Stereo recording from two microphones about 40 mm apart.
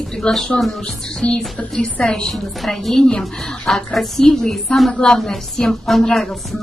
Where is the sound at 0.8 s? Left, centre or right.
Left.